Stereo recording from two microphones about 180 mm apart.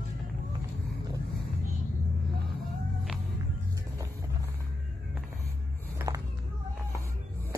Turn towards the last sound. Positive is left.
turn(degrees=-15)  # may be behind; listen again after turning